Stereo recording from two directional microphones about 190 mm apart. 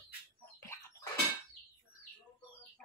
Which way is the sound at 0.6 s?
15° left (ahead or behind).